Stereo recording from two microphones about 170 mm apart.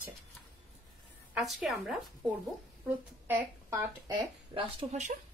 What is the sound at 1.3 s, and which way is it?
A woman's voice, 5° right (ahead or behind).